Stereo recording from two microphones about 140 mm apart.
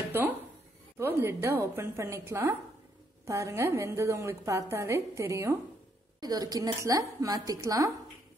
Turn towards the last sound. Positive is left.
turn(degrees=-25)  # may be behind; listen again after turning